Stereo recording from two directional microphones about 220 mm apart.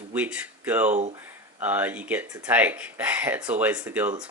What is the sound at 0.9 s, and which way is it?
Speech, 30° right (ahead or behind).